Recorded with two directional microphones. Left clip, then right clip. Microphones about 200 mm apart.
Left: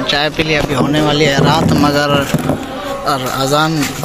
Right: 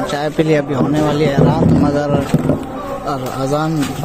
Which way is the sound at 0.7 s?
Centre (ahead or behind).